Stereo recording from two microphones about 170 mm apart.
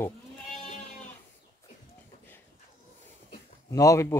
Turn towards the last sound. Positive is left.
turn(degrees=15)  # may be behind; listen again after turning